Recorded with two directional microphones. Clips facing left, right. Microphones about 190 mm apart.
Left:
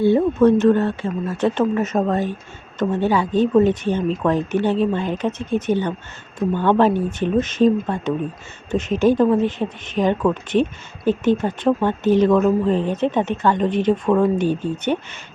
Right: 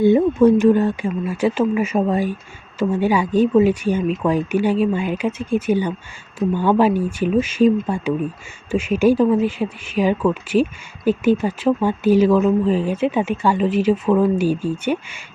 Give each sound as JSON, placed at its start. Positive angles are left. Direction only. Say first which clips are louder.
{"t": 0.0, "sound": "speech", "louder": "right 1 dB", "side_deg": -15}